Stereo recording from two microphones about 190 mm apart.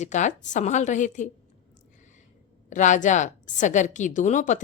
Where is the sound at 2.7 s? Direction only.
40° left (ahead or behind).